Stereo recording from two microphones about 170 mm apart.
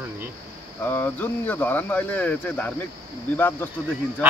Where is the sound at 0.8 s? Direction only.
10° left (ahead or behind).